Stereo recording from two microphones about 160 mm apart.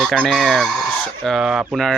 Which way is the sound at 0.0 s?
Centre (ahead or behind).